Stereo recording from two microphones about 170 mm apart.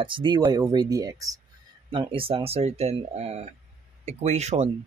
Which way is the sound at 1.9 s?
30° right (ahead or behind).